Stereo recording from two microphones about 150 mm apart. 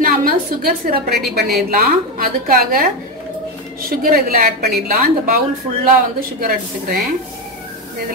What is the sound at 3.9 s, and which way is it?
Speech, 80° right.